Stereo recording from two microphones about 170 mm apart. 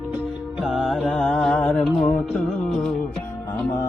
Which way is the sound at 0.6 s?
Centre (ahead or behind).